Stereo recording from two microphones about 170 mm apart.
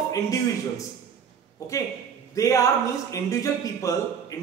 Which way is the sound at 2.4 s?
20° left (ahead or behind).